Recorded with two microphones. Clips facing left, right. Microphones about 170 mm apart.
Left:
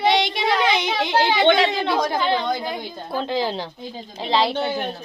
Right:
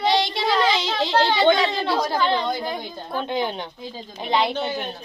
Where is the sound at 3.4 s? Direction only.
30° left (ahead or behind).